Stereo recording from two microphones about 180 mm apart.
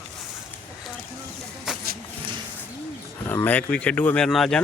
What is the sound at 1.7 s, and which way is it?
Vehicle, 5° right (ahead or behind).